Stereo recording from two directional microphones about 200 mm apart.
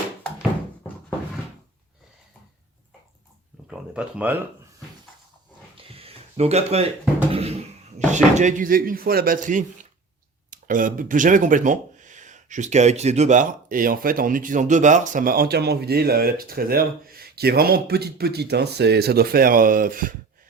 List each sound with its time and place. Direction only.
3.7 s speech: 5° right (ahead or behind)
5.7 s a sound: 30° right (ahead or behind)
7.3 s speech: 30° right (ahead or behind)